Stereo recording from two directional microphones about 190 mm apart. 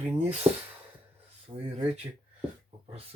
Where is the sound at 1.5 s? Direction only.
20° right (ahead or behind).